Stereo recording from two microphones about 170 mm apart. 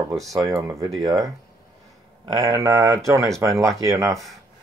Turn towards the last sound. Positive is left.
turn(degrees=-20)  # may be behind; listen again after turning